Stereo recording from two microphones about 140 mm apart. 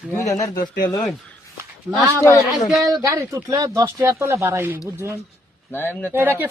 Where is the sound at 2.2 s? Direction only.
25° left (ahead or behind).